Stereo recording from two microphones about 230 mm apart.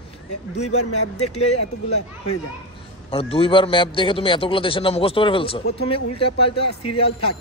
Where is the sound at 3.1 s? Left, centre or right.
Left.